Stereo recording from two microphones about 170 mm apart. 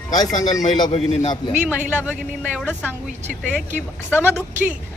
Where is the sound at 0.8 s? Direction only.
40° left (ahead or behind).